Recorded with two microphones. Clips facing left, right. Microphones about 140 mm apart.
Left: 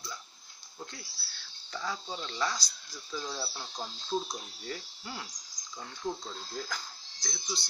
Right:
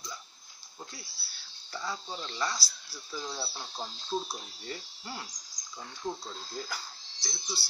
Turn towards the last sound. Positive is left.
turn(degrees=-5)  # may be behind; listen again after turning